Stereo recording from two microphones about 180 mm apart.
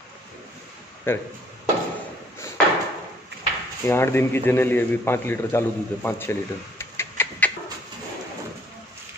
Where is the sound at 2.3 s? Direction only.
15° left (ahead or behind).